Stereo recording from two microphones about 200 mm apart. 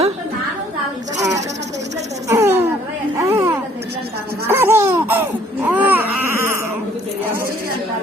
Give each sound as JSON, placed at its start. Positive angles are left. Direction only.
{"t": 2.3, "sound": "a sound", "side_deg": -15}
{"t": 4.4, "sound": "laughter", "side_deg": -10}
{"t": 5.6, "sound": "baby cry", "side_deg": -10}